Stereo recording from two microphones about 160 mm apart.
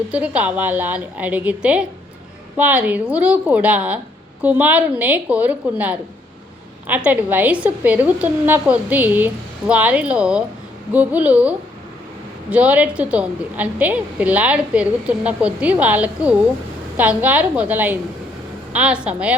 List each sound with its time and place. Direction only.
0.1 s a woman's voice: 10° right (ahead or behind)